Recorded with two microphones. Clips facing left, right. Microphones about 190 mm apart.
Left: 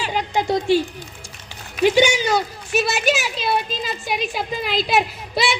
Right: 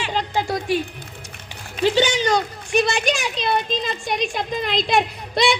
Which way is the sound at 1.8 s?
10° left (ahead or behind).